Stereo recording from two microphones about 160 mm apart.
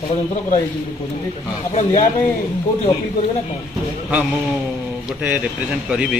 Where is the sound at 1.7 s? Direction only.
45° left (ahead or behind).